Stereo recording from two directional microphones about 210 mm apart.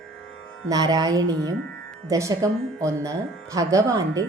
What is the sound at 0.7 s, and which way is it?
Speech, 15° right (ahead or behind).